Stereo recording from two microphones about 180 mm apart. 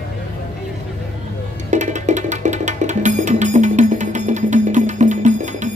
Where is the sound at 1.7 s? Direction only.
40° right (ahead or behind).